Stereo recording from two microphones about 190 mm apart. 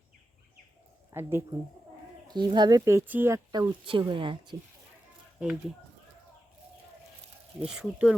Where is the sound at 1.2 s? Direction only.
15° right (ahead or behind).